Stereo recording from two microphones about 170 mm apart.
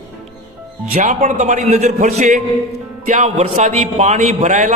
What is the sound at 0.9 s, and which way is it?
A man's voice, 45° right (ahead or behind).